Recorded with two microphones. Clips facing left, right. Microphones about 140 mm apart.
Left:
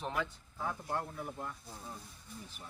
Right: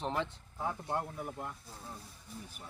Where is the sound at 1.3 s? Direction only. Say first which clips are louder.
Right 1 dB; 10° right (ahead or behind).